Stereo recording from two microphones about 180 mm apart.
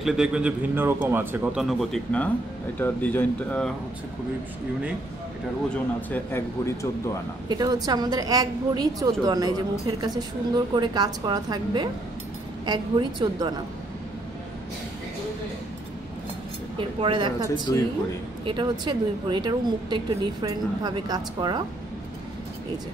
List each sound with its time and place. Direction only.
0.0 s speech: centre (ahead or behind)
5.7 s speech: 10° left (ahead or behind)
7.4 s speech: 20° right (ahead or behind)
16.7 s speech: 30° right (ahead or behind)
17.7 s speech: 20° left (ahead or behind)
18.4 s speech: 25° right (ahead or behind)